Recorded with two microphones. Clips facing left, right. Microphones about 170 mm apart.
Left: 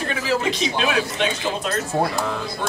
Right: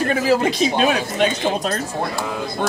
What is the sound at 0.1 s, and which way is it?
Speech, 45° right (ahead or behind).